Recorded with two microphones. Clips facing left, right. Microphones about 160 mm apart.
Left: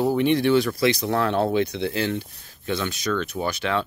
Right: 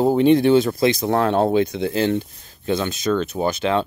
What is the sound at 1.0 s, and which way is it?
Speech, 45° right (ahead or behind).